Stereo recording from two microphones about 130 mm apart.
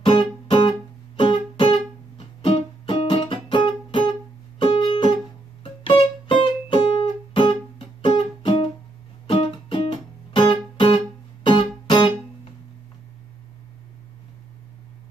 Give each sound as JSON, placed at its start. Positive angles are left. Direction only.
{"t": 0.0, "sound": "music", "side_deg": 40}
{"t": 9.3, "sound": "music", "side_deg": 45}